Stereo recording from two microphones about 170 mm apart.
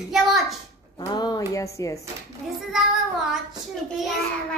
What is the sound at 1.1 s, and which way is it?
Speech, 25° left (ahead or behind).